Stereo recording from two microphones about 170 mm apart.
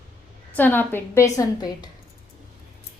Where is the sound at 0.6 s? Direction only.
10° left (ahead or behind).